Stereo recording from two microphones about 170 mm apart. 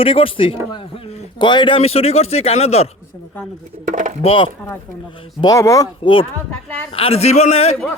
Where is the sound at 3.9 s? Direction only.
45° right (ahead or behind).